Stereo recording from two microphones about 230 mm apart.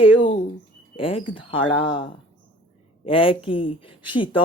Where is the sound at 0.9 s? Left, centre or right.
Left.